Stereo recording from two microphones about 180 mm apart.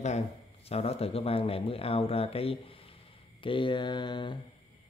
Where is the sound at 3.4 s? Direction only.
30° left (ahead or behind).